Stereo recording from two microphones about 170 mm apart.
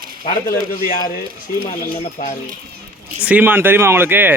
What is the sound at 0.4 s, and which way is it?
Speech, 55° left (ahead or behind).